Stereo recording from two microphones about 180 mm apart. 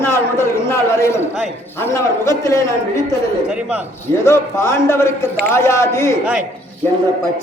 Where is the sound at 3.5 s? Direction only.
5° right (ahead or behind).